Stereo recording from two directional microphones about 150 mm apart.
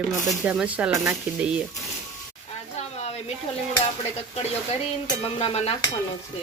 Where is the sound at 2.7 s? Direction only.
45° left (ahead or behind).